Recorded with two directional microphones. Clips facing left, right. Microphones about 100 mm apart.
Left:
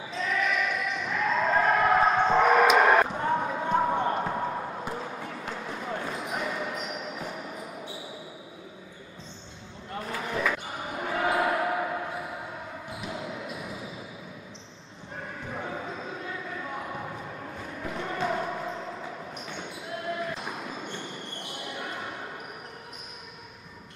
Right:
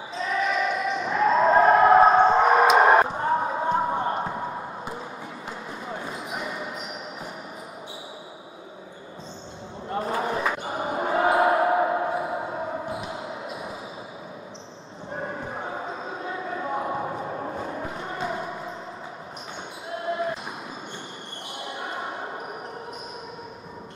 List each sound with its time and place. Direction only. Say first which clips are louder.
0.1 s basketball bounce: right 3 dB; 25° right (ahead or behind)
4.3 s basketball bounce: left 1 dB; 10° right (ahead or behind)
9.9 s basketball bounce: right 6 dB; 30° right (ahead or behind)
15.1 s basketball bounce: right 5 dB; 30° right (ahead or behind); by 18.9 s 15° right (ahead or behind)
20.1 s basketball bounce: right 5 dB; 25° right (ahead or behind)